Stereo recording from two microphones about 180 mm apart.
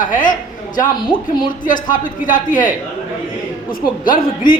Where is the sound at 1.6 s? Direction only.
45° left (ahead or behind).